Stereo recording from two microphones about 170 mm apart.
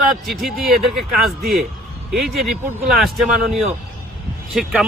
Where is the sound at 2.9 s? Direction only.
Centre (ahead or behind).